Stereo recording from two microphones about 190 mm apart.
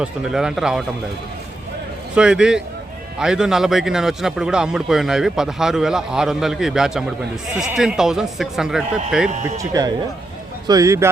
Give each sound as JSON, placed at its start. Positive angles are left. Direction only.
{"t": 0.0, "sound": "a man's voice", "side_deg": -5}
{"t": 2.1, "sound": "a man's voice", "side_deg": -5}
{"t": 9.6, "sound": "speech", "side_deg": -20}